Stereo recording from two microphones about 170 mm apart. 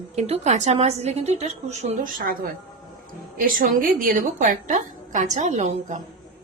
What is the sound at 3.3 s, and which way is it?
A woman's voice, 55° right (ahead or behind).